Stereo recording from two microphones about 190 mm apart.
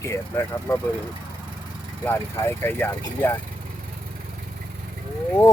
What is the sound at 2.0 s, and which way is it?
Speech, 10° left (ahead or behind).